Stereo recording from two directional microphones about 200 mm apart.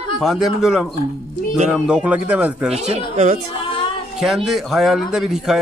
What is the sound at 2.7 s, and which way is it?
Speech, 35° right (ahead or behind).